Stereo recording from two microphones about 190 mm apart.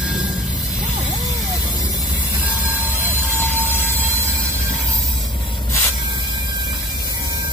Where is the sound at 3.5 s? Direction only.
10° right (ahead or behind).